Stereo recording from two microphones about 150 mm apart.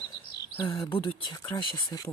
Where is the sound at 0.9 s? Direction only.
35° left (ahead or behind).